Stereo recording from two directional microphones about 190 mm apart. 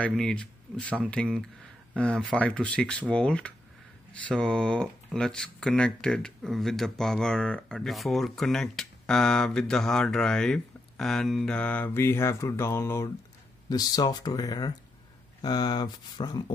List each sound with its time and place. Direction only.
0.0 s speech: 5° left (ahead or behind); by 16.5 s 20° left (ahead or behind)